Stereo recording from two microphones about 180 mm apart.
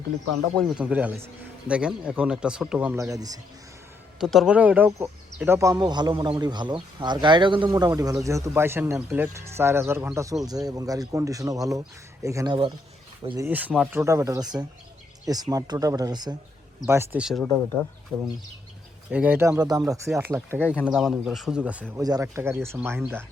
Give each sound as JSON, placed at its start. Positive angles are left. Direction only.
{"t": 0.5, "sound": "a man's voice", "side_deg": 0}
{"t": 4.2, "sound": "a man's voice", "side_deg": 0}
{"t": 13.5, "sound": "a man's voice", "side_deg": -10}
{"t": 19.1, "sound": "a man's voice", "side_deg": -10}
{"t": 20.1, "sound": "a man's voice", "side_deg": -10}
{"t": 21.9, "sound": "a man's voice", "side_deg": -20}